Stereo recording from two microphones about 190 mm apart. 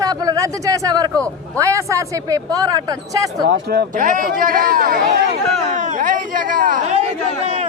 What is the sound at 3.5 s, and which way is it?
Speech, 60° right (ahead or behind).